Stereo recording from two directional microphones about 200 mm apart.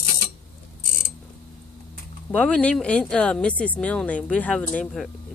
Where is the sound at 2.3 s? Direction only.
5° left (ahead or behind).